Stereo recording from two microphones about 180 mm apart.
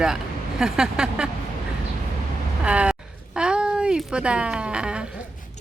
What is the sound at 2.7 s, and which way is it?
Speech, 5° right (ahead or behind).